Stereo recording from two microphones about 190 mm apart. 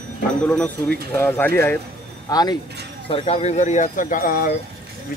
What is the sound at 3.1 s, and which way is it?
Speech, 30° left (ahead or behind).